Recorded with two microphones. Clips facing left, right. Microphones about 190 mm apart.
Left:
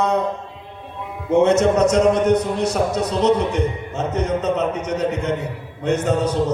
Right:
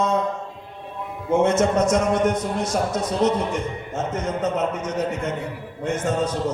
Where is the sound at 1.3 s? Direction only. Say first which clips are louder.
Left 4 dB; 65° left (ahead or behind).